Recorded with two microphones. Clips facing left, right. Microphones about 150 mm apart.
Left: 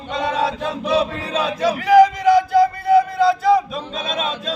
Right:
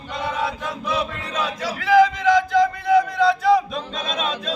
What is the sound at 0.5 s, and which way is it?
Chant, 30° left (ahead or behind).